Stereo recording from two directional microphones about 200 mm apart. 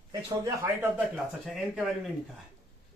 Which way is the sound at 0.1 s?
15° right (ahead or behind).